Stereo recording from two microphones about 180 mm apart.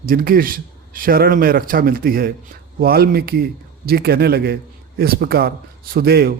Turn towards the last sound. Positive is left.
turn(degrees=-60)  # may be behind; listen again after turning